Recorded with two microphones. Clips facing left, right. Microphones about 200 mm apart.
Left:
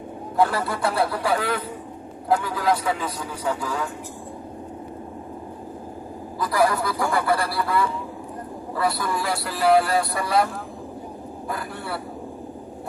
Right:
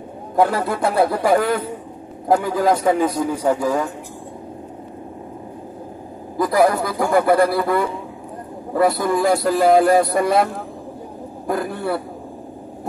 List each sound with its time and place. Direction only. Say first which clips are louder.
0.5 s speech: right 4 dB; 45° right (ahead or behind)
6.3 s speech: right 5 dB; 50° right (ahead or behind)